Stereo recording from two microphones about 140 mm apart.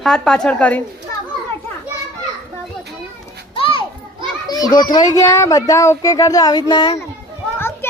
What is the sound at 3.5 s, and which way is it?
Children playing, 40° left (ahead or behind).